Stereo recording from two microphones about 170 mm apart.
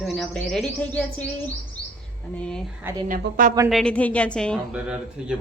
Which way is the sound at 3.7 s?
5° left (ahead or behind).